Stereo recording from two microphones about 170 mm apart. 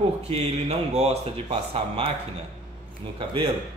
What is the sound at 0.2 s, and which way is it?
Speech, 35° right (ahead or behind).